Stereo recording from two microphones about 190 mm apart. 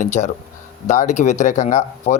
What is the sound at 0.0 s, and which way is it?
Speech, 40° left (ahead or behind).